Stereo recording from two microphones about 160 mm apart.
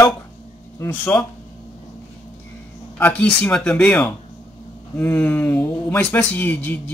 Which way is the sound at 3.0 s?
10° left (ahead or behind).